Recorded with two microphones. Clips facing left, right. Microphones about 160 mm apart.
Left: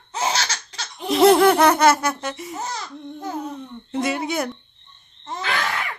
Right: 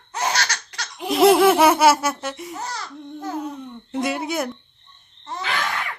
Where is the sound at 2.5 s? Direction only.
20° left (ahead or behind).